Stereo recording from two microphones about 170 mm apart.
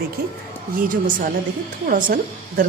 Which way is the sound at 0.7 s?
55° right (ahead or behind).